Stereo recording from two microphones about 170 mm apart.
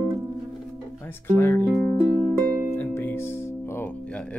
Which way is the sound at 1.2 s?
15° left (ahead or behind).